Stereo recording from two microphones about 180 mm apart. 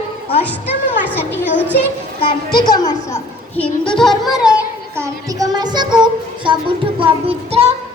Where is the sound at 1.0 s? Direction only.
10° left (ahead or behind).